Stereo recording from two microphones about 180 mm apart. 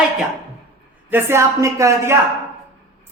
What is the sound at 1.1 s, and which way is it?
Speech, 15° right (ahead or behind).